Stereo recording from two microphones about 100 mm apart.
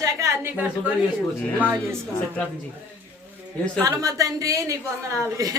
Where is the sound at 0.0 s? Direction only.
30° right (ahead or behind).